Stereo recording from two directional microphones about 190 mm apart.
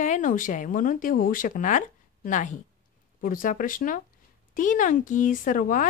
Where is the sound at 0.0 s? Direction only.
40° left (ahead or behind).